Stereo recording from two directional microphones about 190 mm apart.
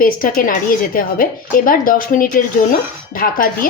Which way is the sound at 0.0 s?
45° left (ahead or behind).